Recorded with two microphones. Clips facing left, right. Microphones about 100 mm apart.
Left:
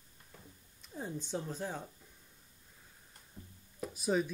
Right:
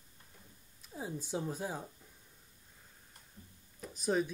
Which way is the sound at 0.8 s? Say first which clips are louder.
Even; 5° right (ahead or behind).